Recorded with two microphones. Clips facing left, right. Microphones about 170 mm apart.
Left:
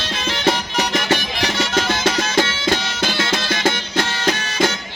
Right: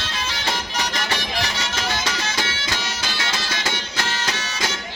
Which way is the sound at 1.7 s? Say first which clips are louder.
Left 7 dB; 55° left (ahead or behind).